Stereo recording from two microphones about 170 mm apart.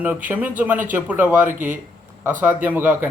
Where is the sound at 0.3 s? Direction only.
10° right (ahead or behind).